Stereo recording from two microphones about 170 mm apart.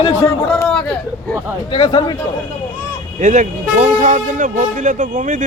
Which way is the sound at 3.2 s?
50° right (ahead or behind).